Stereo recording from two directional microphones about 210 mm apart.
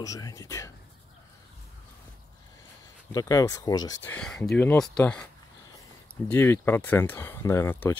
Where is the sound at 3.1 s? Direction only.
15° left (ahead or behind).